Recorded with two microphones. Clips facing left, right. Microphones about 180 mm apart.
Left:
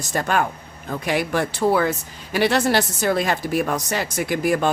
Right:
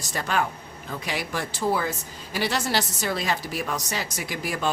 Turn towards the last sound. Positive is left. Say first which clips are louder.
# left 9 dB
turn(degrees=55)  # may be behind; listen again after turning